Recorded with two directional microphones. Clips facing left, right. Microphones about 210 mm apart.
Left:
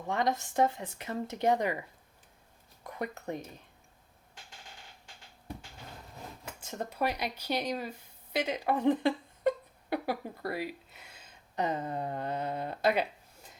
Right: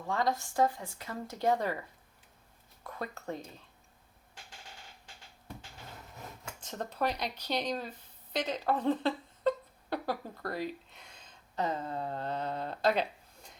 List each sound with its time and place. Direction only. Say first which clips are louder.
0.1 s speech: left 1 dB; 20° left (ahead or behind)
2.8 s speech: left 2 dB; 15° left (ahead or behind)
6.6 s speech: left 1 dB; 10° left (ahead or behind)